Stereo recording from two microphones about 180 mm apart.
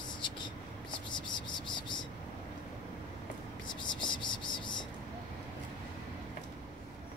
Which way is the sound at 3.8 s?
25° left (ahead or behind).